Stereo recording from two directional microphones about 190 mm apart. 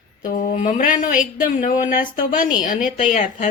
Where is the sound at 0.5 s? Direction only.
40° left (ahead or behind).